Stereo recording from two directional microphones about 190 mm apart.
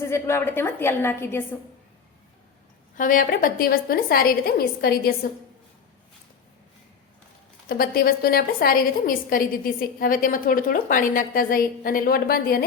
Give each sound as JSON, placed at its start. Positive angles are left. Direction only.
{"t": 0.0, "sound": "a woman's voice", "side_deg": 15}
{"t": 3.0, "sound": "a woman's voice", "side_deg": 45}
{"t": 7.7, "sound": "a woman's voice", "side_deg": 50}